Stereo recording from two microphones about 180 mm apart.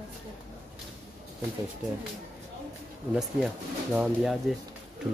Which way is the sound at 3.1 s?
Centre (ahead or behind).